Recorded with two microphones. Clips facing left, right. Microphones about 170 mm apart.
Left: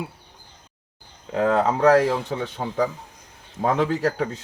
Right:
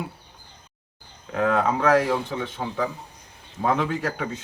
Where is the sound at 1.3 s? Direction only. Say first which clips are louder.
Left 2 dB; 30° left (ahead or behind).